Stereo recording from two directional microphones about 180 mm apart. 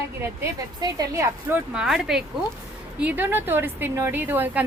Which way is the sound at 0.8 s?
20° right (ahead or behind).